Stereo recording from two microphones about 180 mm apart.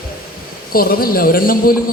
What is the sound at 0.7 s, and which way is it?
A woman's voice, 55° left (ahead or behind).